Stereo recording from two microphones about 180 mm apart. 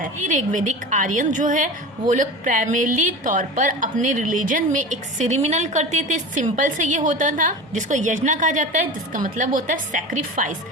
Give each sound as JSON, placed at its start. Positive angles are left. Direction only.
{"t": 0.0, "sound": "a woman's voice", "side_deg": -45}